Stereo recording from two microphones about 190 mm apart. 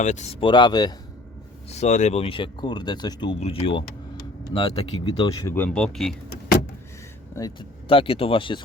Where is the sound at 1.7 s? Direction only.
35° left (ahead or behind).